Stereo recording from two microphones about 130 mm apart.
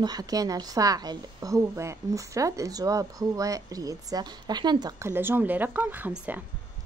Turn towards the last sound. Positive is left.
turn(degrees=-15)  # may be behind; listen again after turning